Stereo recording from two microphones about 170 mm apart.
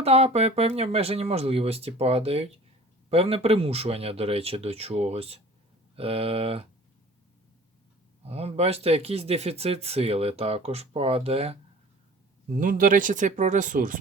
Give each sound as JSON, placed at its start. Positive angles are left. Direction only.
{"t": 0.0, "sound": "speech", "side_deg": -35}
{"t": 8.2, "sound": "speech", "side_deg": -35}
{"t": 12.5, "sound": "speech", "side_deg": -55}